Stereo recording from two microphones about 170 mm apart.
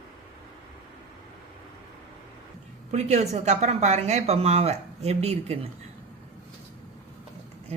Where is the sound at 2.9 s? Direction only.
40° right (ahead or behind).